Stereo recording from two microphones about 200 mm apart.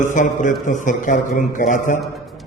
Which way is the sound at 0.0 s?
40° left (ahead or behind).